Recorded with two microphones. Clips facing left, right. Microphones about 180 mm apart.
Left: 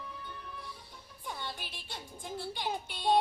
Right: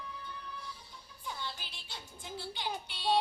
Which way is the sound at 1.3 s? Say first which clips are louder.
Left 1 dB; 55° left (ahead or behind).